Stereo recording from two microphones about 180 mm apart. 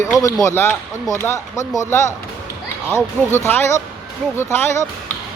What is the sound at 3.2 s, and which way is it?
Speech, 5° left (ahead or behind).